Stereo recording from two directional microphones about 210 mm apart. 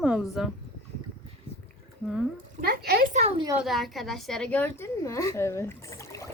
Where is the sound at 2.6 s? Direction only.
45° right (ahead or behind).